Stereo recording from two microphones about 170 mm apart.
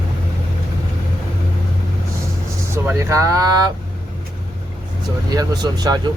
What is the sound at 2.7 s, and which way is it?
Vehicle, 15° right (ahead or behind).